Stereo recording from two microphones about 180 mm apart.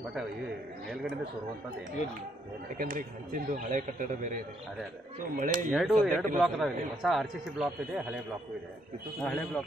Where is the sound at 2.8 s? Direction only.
50° right (ahead or behind).